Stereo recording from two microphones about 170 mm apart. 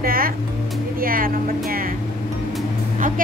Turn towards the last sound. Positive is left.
turn(degrees=-50)  # may be behind; listen again after turning